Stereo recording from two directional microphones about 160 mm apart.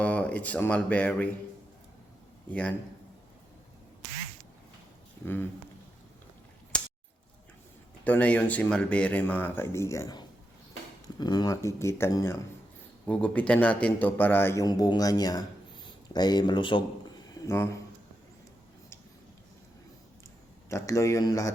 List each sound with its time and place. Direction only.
0.0 s speech: 10° left (ahead or behind)
2.5 s a man's voice: 10° left (ahead or behind)
5.2 s speech: 15° left (ahead or behind)
6.7 s a sound: 5° left (ahead or behind)
8.0 s a man's voice: 10° left (ahead or behind); by 16.8 s 30° left (ahead or behind)
17.4 s speech: 15° left (ahead or behind)
20.7 s speech: 20° left (ahead or behind)